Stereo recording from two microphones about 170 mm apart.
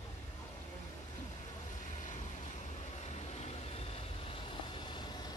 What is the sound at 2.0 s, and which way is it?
Vehicle, 45° left (ahead or behind).